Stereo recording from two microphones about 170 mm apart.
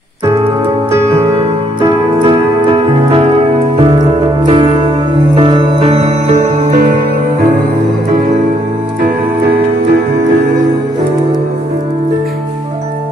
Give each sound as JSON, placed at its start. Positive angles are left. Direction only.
{"t": 1.8, "sound": "music", "side_deg": -30}
{"t": 4.4, "sound": "music", "side_deg": -30}